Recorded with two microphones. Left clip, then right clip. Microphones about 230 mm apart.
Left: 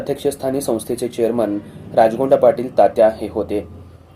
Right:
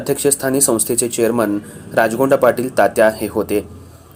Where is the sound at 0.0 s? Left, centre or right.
Right.